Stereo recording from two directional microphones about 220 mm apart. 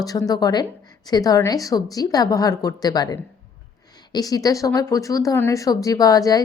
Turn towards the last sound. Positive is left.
turn(degrees=15)  # may be behind; listen again after turning